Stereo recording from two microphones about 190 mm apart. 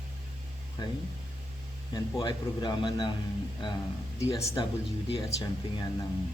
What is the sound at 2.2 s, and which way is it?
Speech, 25° left (ahead or behind).